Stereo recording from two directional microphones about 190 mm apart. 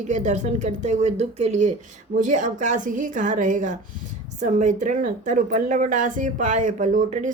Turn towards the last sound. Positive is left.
turn(degrees=-40)  # may be behind; listen again after turning